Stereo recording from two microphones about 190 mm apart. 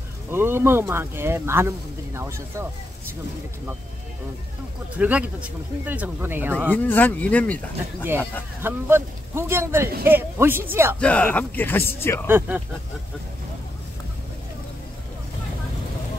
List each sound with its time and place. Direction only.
0.3 s speech: 10° right (ahead or behind)
4.9 s speech: 10° right (ahead or behind)
6.7 s speech: 10° left (ahead or behind)
8.6 s speech: 10° right (ahead or behind)
11.0 s speech: 5° left (ahead or behind)
12.3 s speech: 10° right (ahead or behind)